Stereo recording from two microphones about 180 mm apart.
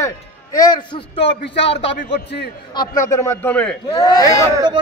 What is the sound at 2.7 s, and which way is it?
A man's voice, 20° left (ahead or behind).